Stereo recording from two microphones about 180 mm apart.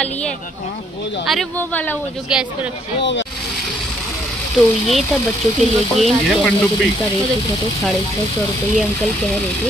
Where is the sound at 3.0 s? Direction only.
85° left.